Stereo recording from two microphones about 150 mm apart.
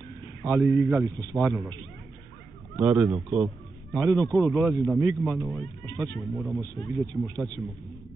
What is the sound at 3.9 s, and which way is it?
A man's voice, 25° right (ahead or behind).